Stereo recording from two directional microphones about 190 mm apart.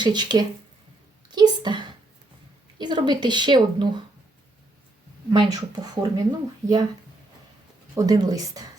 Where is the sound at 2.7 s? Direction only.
25° right (ahead or behind).